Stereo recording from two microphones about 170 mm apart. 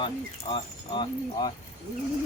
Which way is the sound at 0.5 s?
30° left (ahead or behind).